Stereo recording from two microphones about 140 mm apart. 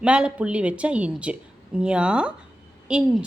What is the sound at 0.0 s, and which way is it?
A woman's voice, 5° right (ahead or behind).